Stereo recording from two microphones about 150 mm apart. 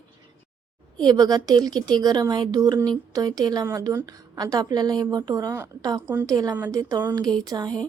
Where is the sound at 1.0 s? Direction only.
25° right (ahead or behind).